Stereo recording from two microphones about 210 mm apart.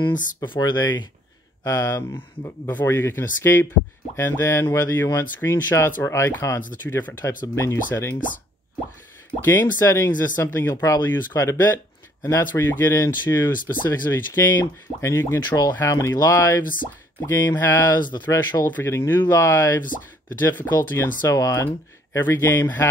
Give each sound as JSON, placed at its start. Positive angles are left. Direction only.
{"t": 0.1, "sound": "speech", "side_deg": 40}
{"t": 0.5, "sound": "speech", "side_deg": 20}
{"t": 9.4, "sound": "speech", "side_deg": 10}